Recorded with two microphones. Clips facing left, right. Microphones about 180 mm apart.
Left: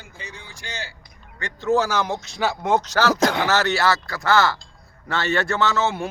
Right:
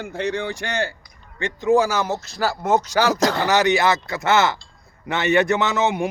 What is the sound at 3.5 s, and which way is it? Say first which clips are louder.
A man's voice: right 3 dB; 15° right (ahead or behind).